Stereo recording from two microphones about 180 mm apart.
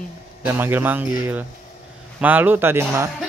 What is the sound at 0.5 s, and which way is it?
Speech, 10° right (ahead or behind).